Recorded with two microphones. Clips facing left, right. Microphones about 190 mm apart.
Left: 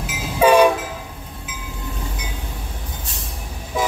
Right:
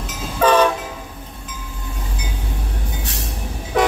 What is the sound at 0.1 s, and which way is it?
Train, 10° left (ahead or behind).